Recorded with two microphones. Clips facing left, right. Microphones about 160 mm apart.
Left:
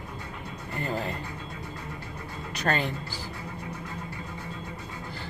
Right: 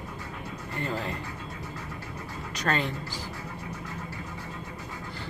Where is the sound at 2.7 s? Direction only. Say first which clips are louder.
Left 1 dB; 35° left (ahead or behind).